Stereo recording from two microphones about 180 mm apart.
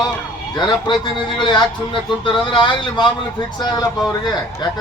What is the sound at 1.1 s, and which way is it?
Speech, 25° left (ahead or behind).